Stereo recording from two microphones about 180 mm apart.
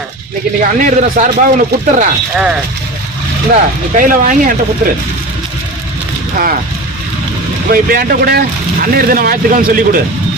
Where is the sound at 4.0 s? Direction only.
50° right (ahead or behind).